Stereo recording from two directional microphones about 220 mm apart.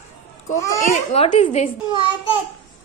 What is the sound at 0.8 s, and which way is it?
Speech, 30° left (ahead or behind).